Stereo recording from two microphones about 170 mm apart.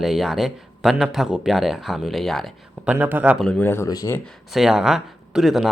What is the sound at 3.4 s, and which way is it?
Speech, 5° left (ahead or behind).